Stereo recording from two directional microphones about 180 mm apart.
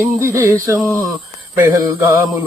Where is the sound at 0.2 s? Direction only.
15° right (ahead or behind).